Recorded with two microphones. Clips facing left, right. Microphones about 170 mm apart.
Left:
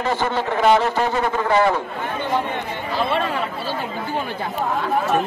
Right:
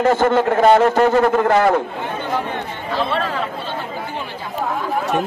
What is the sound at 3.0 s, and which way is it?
Speech, centre (ahead or behind).